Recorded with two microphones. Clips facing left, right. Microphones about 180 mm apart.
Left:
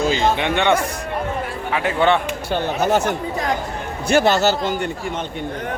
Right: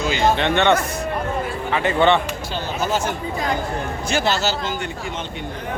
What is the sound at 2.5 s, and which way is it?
Speech, 60° left (ahead or behind).